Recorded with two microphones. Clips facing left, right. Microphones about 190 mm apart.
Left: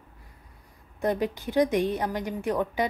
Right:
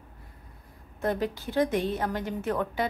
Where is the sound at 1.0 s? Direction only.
15° left (ahead or behind).